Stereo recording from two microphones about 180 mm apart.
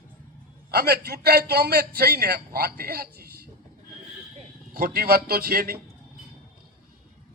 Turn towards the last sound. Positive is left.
turn(degrees=-60)  # may be behind; listen again after turning